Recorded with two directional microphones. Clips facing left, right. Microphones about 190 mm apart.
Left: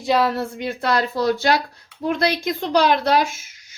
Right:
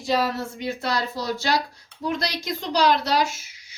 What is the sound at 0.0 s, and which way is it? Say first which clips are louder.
Speech: left 4 dB; 65° left (ahead or behind).